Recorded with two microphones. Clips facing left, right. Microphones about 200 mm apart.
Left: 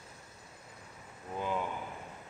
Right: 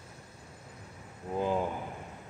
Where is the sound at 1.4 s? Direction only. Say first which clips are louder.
Right 5 dB; 35° right (ahead or behind).